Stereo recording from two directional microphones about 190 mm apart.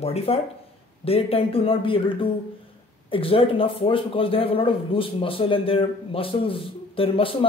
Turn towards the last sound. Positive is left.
turn(degrees=30)  # may be behind; listen again after turning